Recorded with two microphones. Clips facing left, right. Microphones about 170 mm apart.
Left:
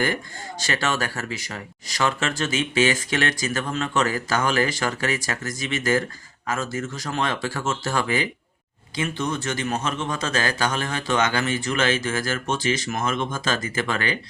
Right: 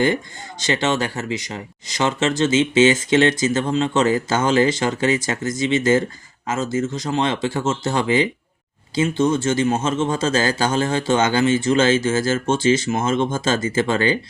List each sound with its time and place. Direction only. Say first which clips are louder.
0.6 s speech: right 5 dB; 20° right (ahead or behind)